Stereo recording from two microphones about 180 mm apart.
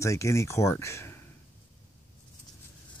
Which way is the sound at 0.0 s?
15° left (ahead or behind).